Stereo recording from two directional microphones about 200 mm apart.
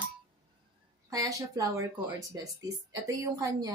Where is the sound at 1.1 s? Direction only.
15° right (ahead or behind).